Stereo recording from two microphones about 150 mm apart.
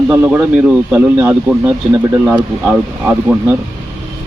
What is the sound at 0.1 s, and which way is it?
Speech, 10° right (ahead or behind).